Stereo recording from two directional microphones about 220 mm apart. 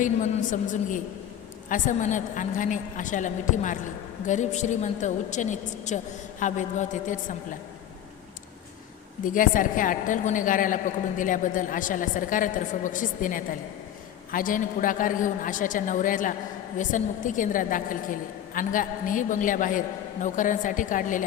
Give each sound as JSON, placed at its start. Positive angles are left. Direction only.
{"t": 0.0, "sound": "a woman's voice", "side_deg": 35}
{"t": 9.2, "sound": "a woman's voice", "side_deg": 35}